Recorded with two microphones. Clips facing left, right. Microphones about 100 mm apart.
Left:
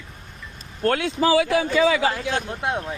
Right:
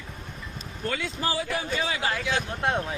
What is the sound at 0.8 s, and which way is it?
Speech, 65° left (ahead or behind).